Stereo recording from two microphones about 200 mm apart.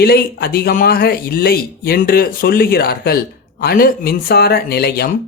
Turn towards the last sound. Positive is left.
turn(degrees=50)  # may be behind; listen again after turning